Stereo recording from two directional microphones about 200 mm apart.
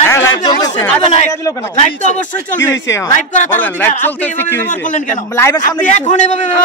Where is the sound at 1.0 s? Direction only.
35° left (ahead or behind).